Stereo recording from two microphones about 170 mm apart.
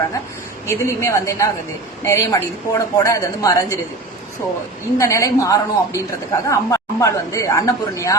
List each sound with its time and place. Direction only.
0.7 s a woman's voice: 15° left (ahead or behind)
4.9 s a woman's voice: 15° left (ahead or behind)